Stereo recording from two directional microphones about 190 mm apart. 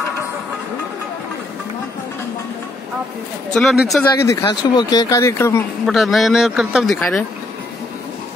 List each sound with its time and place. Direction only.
3.5 s speech: centre (ahead or behind)
4.3 s speech: 20° left (ahead or behind)
5.9 s speech: centre (ahead or behind)